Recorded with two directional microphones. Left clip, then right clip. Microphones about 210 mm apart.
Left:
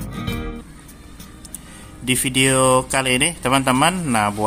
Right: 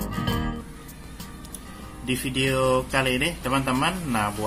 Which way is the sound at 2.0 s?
40° left (ahead or behind).